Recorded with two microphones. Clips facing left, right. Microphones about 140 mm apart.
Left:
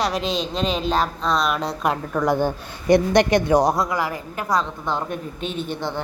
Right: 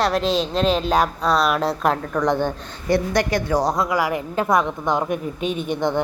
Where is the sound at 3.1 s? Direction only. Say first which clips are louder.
Left 4 dB; 20° left (ahead or behind).